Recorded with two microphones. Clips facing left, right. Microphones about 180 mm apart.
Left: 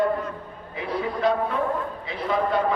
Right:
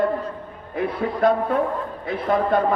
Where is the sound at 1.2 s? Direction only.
50° right (ahead or behind).